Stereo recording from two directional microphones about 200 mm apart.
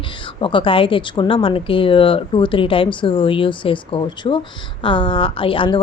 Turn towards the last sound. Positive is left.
turn(degrees=25)  # may be behind; listen again after turning